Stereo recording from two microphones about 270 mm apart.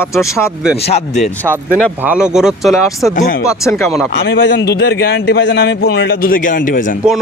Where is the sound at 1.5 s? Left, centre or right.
Centre.